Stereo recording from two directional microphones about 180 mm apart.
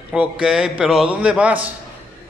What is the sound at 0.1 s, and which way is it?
A man's voice, 5° right (ahead or behind).